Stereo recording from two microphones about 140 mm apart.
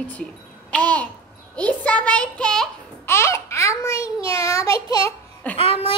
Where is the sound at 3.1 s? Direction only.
20° left (ahead or behind).